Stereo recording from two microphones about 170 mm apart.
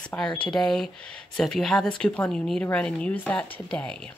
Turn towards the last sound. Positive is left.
turn(degrees=5)  # may be behind; listen again after turning